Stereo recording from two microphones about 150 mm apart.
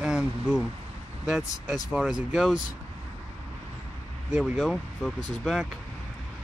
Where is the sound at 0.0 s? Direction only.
5° right (ahead or behind).